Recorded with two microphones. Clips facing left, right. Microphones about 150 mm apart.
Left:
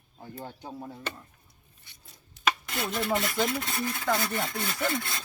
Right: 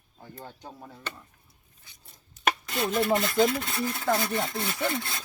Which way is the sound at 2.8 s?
25° right (ahead or behind).